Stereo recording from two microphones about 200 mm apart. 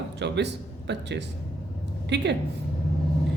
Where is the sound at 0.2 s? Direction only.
60° right (ahead or behind).